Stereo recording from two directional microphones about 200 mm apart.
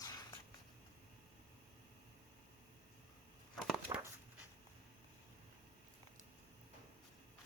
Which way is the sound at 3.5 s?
Centre (ahead or behind).